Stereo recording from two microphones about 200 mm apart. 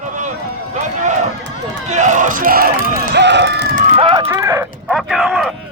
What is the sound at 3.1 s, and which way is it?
Run, 60° right (ahead or behind).